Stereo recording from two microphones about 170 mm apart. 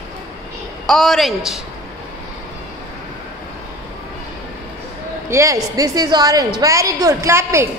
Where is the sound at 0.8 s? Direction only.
Centre (ahead or behind).